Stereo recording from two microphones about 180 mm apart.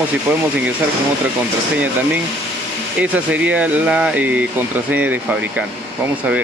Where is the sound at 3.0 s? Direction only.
10° right (ahead or behind).